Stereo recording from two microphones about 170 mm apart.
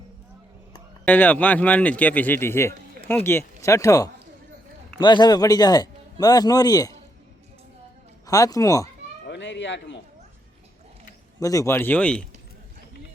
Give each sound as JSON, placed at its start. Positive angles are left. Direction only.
{"t": 1.0, "sound": "a man's voice", "side_deg": 10}
{"t": 8.3, "sound": "speech", "side_deg": 20}
{"t": 9.2, "sound": "speech", "side_deg": 90}
{"t": 11.3, "sound": "a man's voice", "side_deg": 20}